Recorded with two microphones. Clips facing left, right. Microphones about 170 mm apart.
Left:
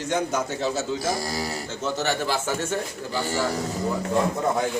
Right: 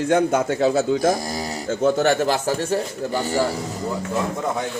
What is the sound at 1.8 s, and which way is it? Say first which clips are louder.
Speech: right 9 dB; 50° right (ahead or behind).